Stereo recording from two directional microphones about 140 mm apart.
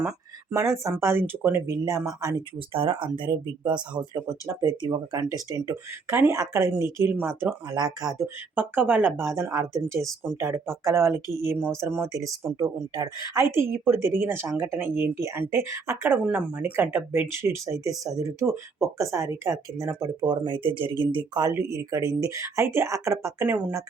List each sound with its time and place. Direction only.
0.5 s speech: 20° right (ahead or behind)
2.7 s speech: 40° right (ahead or behind)
8.5 s a woman's voice: 10° right (ahead or behind)